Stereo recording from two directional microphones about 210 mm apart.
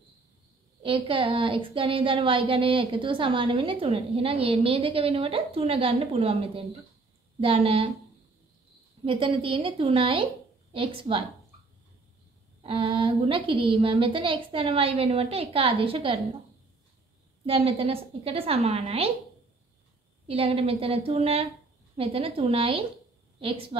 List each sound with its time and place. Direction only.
0.8 s a woman's voice: 25° right (ahead or behind)
9.0 s a woman's voice: 25° right (ahead or behind)
12.6 s a woman's voice: 25° right (ahead or behind)
17.5 s a woman's voice: 25° right (ahead or behind)
20.2 s a woman's voice: 25° right (ahead or behind)